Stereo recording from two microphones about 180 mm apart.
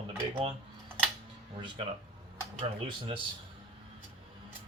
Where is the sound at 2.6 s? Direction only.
30° right (ahead or behind).